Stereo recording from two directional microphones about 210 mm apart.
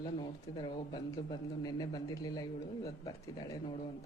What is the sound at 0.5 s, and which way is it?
A woman's voice, 20° left (ahead or behind).